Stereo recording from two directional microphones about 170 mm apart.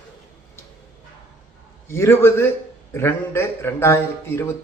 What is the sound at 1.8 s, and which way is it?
Speech, 15° left (ahead or behind).